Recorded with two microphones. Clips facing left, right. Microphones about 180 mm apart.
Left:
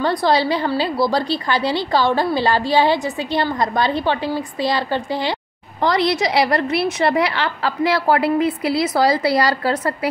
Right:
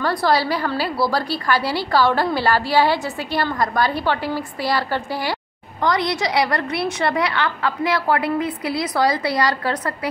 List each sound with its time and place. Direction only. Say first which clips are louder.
0.0 s a woman's voice: left 2 dB; 20° left (ahead or behind)